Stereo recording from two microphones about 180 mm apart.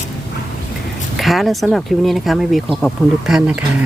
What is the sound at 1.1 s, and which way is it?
Speech, centre (ahead or behind).